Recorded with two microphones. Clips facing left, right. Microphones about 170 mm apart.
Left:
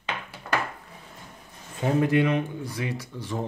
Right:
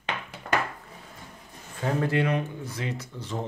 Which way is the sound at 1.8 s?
15° left (ahead or behind).